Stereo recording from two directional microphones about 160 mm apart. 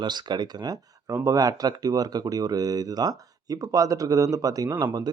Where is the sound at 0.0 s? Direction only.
25° right (ahead or behind).